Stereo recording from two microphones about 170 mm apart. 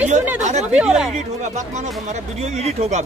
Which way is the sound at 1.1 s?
45° right (ahead or behind).